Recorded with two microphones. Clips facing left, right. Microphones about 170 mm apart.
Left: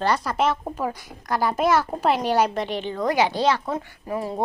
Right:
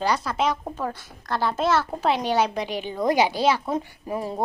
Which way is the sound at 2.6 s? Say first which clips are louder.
Even; 5° right (ahead or behind).